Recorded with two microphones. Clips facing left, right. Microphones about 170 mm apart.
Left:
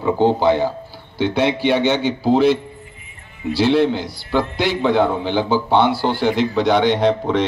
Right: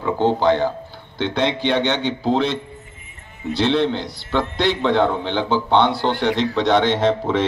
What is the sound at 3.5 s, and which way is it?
A man's voice, 5° left (ahead or behind).